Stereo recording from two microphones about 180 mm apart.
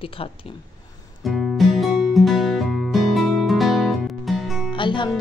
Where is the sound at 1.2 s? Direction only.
Centre (ahead or behind).